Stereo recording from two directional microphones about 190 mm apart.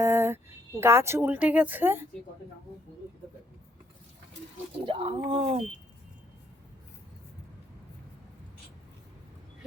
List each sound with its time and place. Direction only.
0.0 s a sound: 15° right (ahead or behind)
0.8 s speech: 15° right (ahead or behind)
4.9 s speech: 30° right (ahead or behind)